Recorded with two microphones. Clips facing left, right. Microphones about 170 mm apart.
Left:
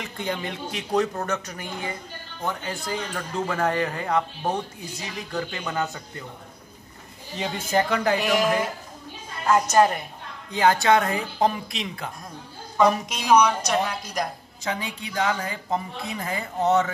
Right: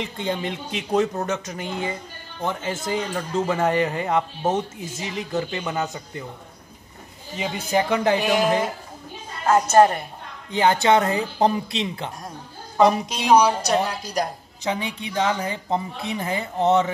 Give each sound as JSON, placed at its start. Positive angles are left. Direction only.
{"t": 0.0, "sound": "speech", "side_deg": -20}
{"t": 7.3, "sound": "speech", "side_deg": -5}
{"t": 7.9, "sound": "speech", "side_deg": -20}
{"t": 10.5, "sound": "a woman's voice", "side_deg": -20}
{"t": 14.6, "sound": "speech", "side_deg": -20}